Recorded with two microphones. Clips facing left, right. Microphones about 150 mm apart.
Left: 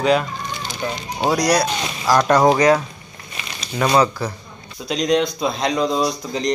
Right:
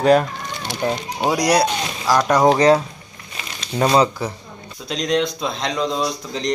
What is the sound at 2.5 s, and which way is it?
Speech, 30° right (ahead or behind).